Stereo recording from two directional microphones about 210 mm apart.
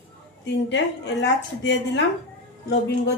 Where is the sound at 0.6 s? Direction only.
55° left (ahead or behind).